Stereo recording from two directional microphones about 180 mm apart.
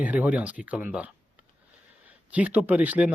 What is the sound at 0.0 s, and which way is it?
Speech, 10° right (ahead or behind).